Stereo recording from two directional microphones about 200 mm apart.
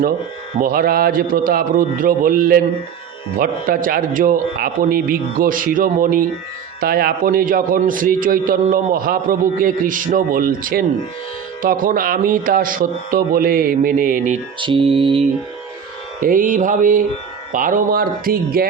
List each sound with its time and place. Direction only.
0.5 s a man's voice: 45° right (ahead or behind)
14.6 s music: 25° right (ahead or behind)
16.2 s a man's voice: 45° right (ahead or behind)